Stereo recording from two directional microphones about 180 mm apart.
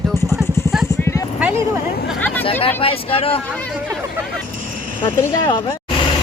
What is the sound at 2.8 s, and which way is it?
Speech, 30° left (ahead or behind).